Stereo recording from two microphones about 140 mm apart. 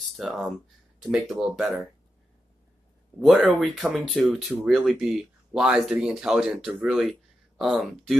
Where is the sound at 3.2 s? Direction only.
Centre (ahead or behind).